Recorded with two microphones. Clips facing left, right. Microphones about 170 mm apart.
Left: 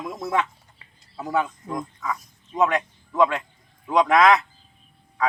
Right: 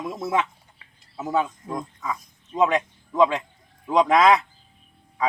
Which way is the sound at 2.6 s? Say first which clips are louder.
Right 1 dB; 20° right (ahead or behind).